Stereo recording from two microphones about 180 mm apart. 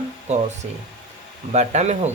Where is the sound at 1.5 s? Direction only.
40° right (ahead or behind).